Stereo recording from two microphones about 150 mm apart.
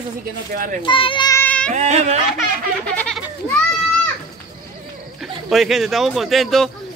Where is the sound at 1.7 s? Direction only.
50° right (ahead or behind).